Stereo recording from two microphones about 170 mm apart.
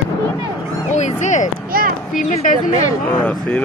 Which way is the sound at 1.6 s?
60° right (ahead or behind).